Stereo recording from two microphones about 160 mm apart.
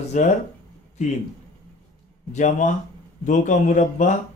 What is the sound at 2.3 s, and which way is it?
Speech, 50° left (ahead or behind).